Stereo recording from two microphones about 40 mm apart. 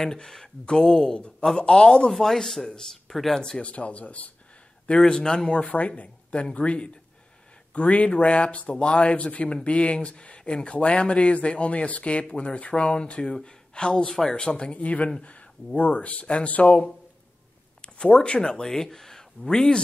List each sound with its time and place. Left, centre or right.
0.0 s speech: centre
3.3 s speech: centre
3.6 s speech: left
4.9 s speech: centre
14.7 s speech: left
17.8 s speech: left